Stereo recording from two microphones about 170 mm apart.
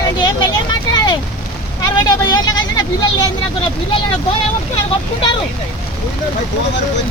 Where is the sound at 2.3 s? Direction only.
25° left (ahead or behind).